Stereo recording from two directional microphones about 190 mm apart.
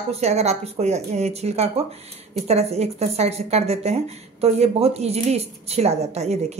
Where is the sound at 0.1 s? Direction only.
35° right (ahead or behind).